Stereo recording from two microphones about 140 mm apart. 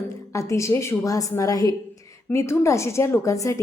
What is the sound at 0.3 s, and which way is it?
A woman's voice, 20° left (ahead or behind).